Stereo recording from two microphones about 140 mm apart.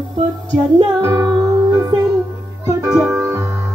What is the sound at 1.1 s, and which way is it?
Music, 25° right (ahead or behind).